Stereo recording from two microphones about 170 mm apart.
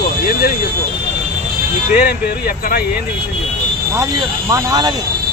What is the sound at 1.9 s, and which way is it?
Speech, 60° left (ahead or behind).